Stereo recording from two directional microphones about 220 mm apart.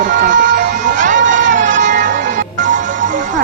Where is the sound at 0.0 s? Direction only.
35° right (ahead or behind).